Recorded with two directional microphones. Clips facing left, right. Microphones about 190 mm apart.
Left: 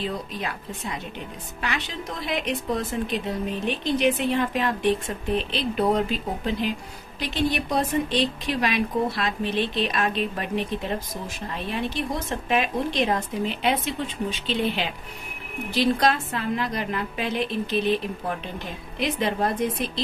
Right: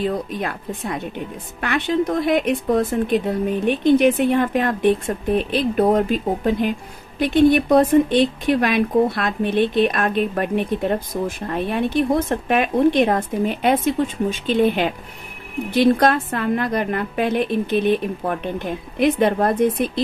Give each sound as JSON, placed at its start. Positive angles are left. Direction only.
{"t": 0.0, "sound": "speech", "side_deg": -55}